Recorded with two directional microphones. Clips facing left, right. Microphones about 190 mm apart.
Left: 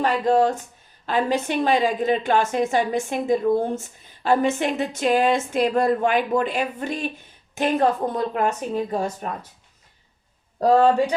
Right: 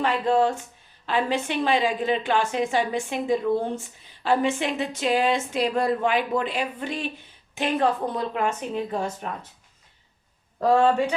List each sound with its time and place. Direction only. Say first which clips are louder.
0.0 s a woman's voice: left 3 dB; 40° left (ahead or behind)
10.6 s speech: left 3 dB; 35° left (ahead or behind)